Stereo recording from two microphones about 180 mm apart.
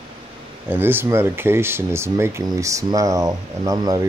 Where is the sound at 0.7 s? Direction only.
10° right (ahead or behind).